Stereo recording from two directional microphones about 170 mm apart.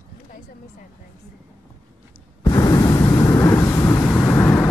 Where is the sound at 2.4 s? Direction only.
20° left (ahead or behind).